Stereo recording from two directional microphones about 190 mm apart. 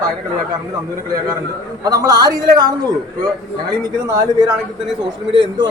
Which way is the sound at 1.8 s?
20° right (ahead or behind).